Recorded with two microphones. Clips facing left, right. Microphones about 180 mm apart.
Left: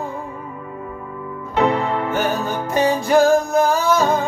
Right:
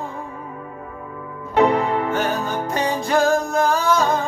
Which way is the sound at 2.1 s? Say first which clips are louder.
Left 1 dB; 5° left (ahead or behind).